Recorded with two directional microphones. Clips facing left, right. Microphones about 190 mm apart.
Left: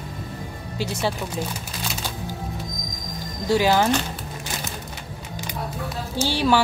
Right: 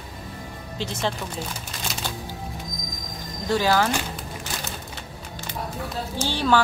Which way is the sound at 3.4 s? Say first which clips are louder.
Left 2 dB; 15° left (ahead or behind).